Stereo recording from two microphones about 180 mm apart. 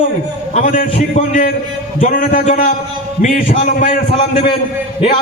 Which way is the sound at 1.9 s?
50° left (ahead or behind).